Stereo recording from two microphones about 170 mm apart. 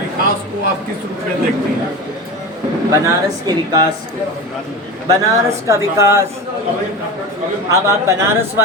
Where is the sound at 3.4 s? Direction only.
25° right (ahead or behind).